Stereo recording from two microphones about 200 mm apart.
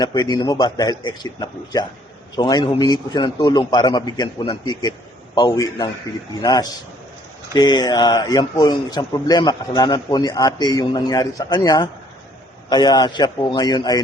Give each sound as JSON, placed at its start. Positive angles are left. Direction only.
{"t": 0.0, "sound": "a man's voice", "side_deg": 20}